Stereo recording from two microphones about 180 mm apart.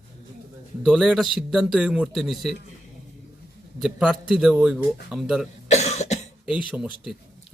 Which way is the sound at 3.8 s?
5° right (ahead or behind).